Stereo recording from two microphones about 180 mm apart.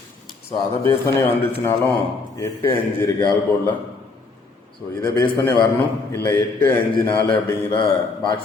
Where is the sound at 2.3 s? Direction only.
15° left (ahead or behind).